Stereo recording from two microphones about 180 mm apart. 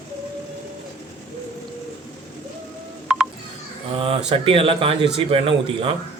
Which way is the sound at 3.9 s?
30° right (ahead or behind).